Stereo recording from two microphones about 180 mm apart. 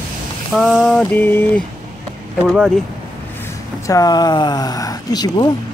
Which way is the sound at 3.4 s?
20° left (ahead or behind).